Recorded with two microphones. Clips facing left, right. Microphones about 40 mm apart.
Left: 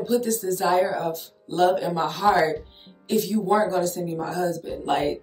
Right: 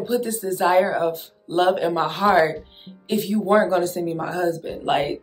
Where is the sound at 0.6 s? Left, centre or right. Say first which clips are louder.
Right 4 dB; right.